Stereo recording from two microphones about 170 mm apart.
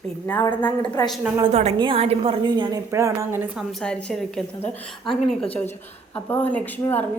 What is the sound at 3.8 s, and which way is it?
A woman's voice, 5° left (ahead or behind).